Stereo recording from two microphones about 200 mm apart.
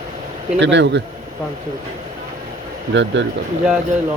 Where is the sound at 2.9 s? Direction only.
65° right (ahead or behind).